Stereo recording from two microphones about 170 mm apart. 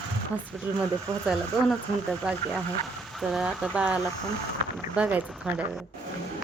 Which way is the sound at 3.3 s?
5° right (ahead or behind).